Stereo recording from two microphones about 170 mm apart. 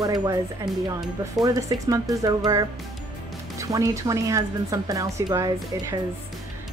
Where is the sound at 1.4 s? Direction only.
20° right (ahead or behind).